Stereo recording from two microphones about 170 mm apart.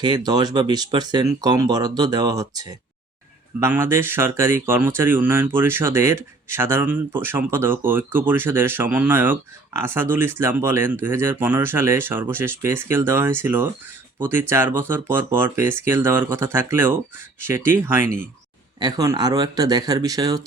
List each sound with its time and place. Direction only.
0.3 s speech: 25° right (ahead or behind)